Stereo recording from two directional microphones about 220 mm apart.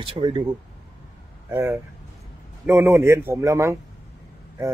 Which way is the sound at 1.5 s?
10° right (ahead or behind).